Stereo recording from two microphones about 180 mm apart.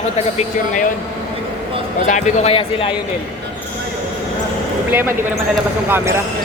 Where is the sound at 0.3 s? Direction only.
45° left (ahead or behind).